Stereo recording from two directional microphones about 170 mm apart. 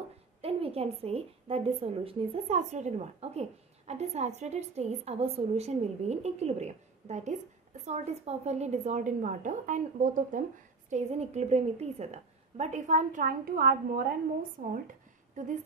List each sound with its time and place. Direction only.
0.4 s a woman's voice: 35° right (ahead or behind); by 14.1 s 60° right (ahead or behind)
15.4 s a woman's voice: 50° right (ahead or behind)